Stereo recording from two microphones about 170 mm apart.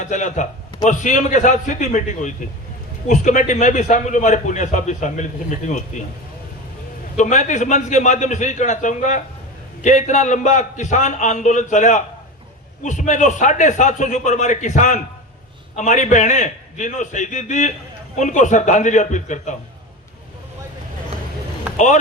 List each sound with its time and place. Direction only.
0.0 s a man's voice: 45° left (ahead or behind)
7.2 s a man's voice: 45° left (ahead or behind)